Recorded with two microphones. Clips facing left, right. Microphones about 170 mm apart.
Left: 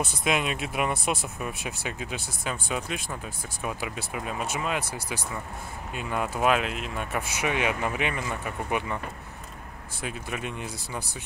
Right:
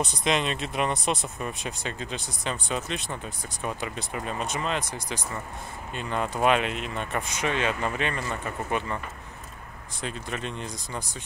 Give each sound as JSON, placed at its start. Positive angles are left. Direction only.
{"t": 0.0, "sound": "speech", "side_deg": 5}
{"t": 10.0, "sound": "speech", "side_deg": 10}